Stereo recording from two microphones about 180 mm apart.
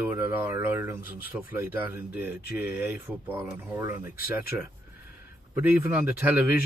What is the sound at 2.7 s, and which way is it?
Speech, 10° right (ahead or behind).